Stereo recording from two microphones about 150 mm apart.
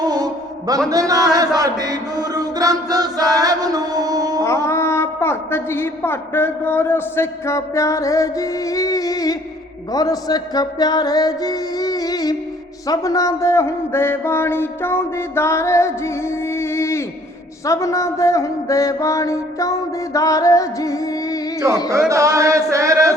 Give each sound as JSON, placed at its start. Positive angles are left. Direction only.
{"t": 0.0, "sound": "a sound", "side_deg": -25}
{"t": 1.5, "sound": "chant", "side_deg": -25}
{"t": 4.4, "sound": "a woman's voice", "side_deg": 20}
{"t": 9.9, "sound": "music", "side_deg": 25}
{"t": 12.9, "sound": "speech", "side_deg": 20}
{"t": 17.7, "sound": "mantra", "side_deg": 20}
{"t": 22.1, "sound": "a sound", "side_deg": -20}